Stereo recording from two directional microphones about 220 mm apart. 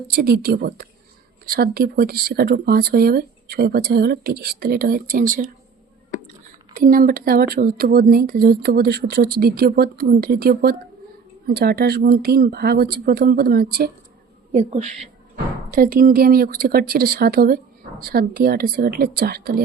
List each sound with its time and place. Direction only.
0.1 s speech: 45° right (ahead or behind)
6.7 s speech: 40° right (ahead or behind)
14.5 s a woman's voice: 30° right (ahead or behind)
15.7 s speech: 40° right (ahead or behind)